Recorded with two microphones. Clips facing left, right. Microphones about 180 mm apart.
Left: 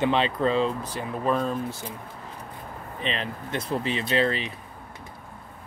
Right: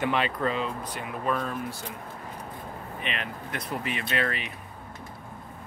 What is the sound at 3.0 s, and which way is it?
Speech, 30° left (ahead or behind).